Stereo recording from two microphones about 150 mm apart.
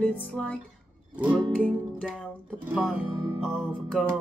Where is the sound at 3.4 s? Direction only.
5° left (ahead or behind).